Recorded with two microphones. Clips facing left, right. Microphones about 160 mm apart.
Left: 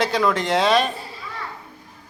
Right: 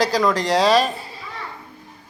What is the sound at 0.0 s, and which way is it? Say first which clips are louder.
Speech: right 1 dB; centre (ahead or behind).